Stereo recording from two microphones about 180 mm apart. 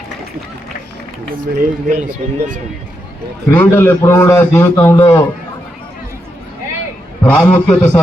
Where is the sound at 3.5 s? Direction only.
15° left (ahead or behind).